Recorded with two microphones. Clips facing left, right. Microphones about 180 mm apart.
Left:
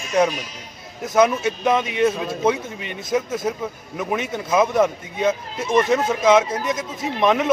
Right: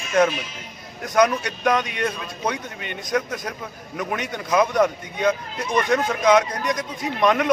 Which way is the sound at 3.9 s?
5° left (ahead or behind).